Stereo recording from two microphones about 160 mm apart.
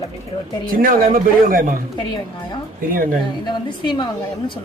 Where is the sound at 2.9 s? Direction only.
60° right (ahead or behind).